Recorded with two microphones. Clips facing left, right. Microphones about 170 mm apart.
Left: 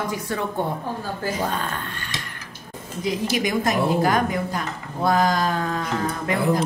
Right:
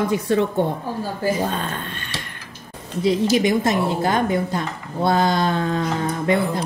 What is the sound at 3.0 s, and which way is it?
Speech, 25° right (ahead or behind).